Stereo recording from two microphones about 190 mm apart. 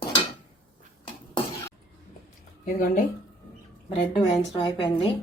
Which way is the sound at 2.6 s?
45° left (ahead or behind).